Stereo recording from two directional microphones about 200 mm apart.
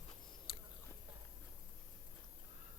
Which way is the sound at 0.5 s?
25° left (ahead or behind).